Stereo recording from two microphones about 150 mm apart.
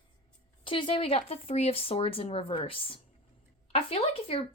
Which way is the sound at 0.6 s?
35° left (ahead or behind).